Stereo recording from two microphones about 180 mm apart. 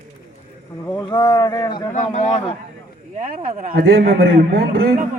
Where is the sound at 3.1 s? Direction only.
45° right (ahead or behind).